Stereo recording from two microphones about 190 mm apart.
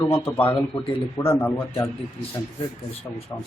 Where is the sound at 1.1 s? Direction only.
15° left (ahead or behind).